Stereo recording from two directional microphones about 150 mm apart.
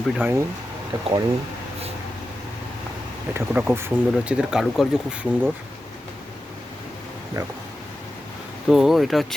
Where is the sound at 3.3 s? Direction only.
10° right (ahead or behind).